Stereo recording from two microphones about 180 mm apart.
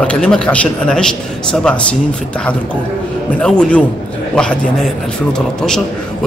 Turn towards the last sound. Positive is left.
turn(degrees=5)  # may be behind; listen again after turning